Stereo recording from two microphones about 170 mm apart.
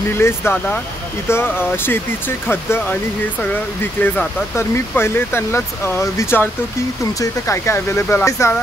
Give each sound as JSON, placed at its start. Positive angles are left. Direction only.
{"t": 0.1, "sound": "speech", "side_deg": 15}